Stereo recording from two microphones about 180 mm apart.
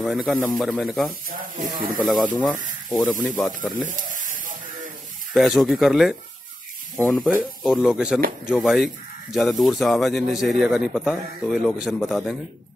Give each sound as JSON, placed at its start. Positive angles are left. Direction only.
{"t": 0.0, "sound": "speech", "side_deg": 0}
{"t": 1.3, "sound": "speech", "side_deg": -50}
{"t": 2.0, "sound": "speech", "side_deg": 0}
{"t": 3.8, "sound": "a sound", "side_deg": -45}
{"t": 5.3, "sound": "speech", "side_deg": 0}